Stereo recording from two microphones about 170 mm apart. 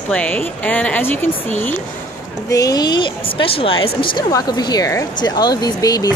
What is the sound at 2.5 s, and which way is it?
Speech, 20° left (ahead or behind).